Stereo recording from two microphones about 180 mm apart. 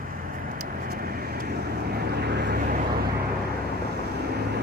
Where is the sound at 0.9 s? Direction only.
55° right (ahead or behind).